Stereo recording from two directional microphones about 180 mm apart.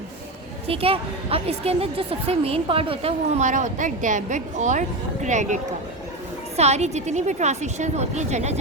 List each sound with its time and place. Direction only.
0.7 s a woman's voice: 30° right (ahead or behind)
6.6 s a woman's voice: 35° right (ahead or behind)